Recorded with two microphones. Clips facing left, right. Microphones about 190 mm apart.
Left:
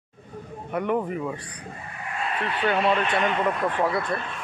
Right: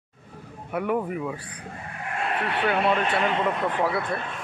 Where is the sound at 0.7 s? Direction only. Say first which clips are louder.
Left 1 dB; 5° right (ahead or behind).